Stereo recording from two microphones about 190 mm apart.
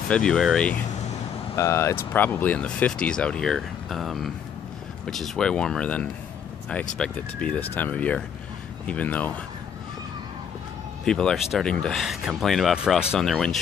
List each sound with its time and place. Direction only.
0.1 s speech: 5° left (ahead or behind)
11.1 s speech: 5° left (ahead or behind)